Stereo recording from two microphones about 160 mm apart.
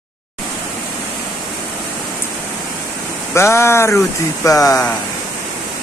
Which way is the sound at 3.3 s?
15° left (ahead or behind).